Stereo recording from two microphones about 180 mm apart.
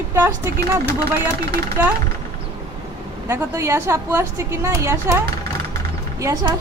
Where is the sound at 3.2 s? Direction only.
15° right (ahead or behind).